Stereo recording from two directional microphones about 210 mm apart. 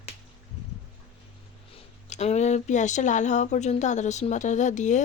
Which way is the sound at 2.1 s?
35° left (ahead or behind).